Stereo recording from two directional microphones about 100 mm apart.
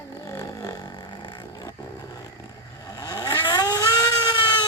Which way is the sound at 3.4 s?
40° left (ahead or behind).